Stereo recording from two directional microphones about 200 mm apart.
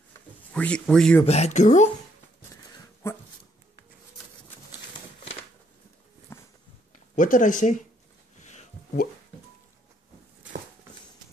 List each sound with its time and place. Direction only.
0.5 s speech: 5° left (ahead or behind)
1.2 s speech: 30° left (ahead or behind)
2.5 s dog: 15° left (ahead or behind)
6.3 s a sound: 15° left (ahead or behind)
7.2 s speech: 40° left (ahead or behind)
8.4 s a sound: 35° left (ahead or behind)